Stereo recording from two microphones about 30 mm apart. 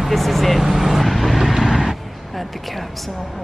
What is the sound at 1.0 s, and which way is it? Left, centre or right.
Vehicle, centre.